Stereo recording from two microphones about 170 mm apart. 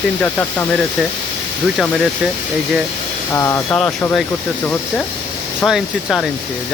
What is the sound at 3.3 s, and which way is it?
Speech, 15° left (ahead or behind).